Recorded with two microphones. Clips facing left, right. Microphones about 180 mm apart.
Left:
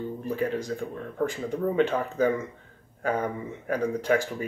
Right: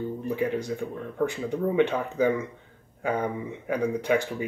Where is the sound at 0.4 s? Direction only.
15° right (ahead or behind).